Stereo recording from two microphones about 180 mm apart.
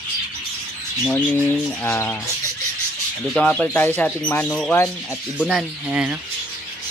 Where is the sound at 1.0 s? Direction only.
10° left (ahead or behind).